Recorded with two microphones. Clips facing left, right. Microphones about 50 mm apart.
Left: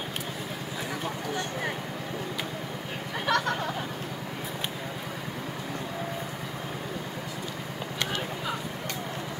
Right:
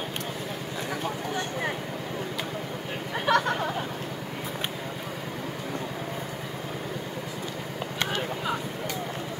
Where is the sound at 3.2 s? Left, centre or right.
Centre.